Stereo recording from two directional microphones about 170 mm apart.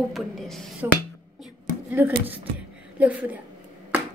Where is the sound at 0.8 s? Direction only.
10° right (ahead or behind).